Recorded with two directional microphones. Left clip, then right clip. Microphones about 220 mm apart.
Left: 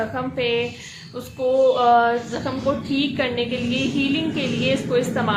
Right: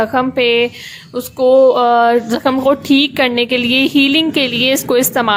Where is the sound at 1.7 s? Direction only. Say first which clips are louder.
Right 6 dB; 40° right (ahead or behind).